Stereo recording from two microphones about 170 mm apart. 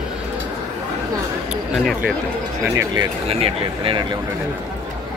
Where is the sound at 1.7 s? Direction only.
Centre (ahead or behind).